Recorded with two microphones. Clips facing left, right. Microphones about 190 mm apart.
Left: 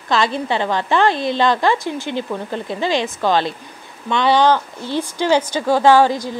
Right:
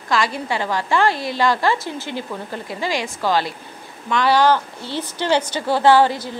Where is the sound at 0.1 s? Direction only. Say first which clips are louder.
Left 3 dB; 25° left (ahead or behind).